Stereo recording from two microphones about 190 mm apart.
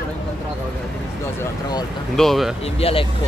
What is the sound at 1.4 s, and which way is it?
Speech, 20° left (ahead or behind).